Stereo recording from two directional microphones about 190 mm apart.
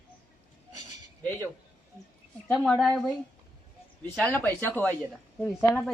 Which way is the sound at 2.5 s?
Centre (ahead or behind).